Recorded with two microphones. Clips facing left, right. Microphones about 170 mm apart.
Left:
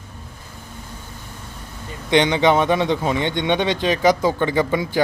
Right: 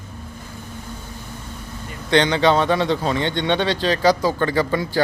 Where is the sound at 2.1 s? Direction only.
15° left (ahead or behind).